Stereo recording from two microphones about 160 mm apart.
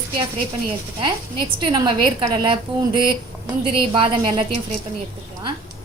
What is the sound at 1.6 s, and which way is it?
Speech, 30° right (ahead or behind).